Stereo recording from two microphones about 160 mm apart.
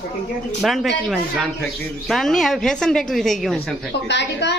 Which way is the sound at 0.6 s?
Centre (ahead or behind).